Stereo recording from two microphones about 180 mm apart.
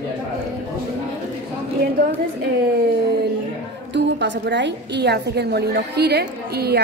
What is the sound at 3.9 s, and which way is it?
A woman's voice, 75° right (ahead or behind).